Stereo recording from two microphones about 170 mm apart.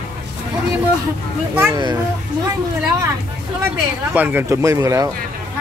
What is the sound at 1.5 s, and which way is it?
Speech, 10° right (ahead or behind).